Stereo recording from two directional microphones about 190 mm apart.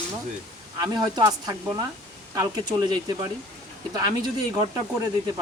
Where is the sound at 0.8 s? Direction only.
20° right (ahead or behind).